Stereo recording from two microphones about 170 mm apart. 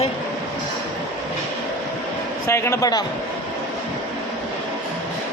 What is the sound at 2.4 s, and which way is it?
Speech, 15° left (ahead or behind).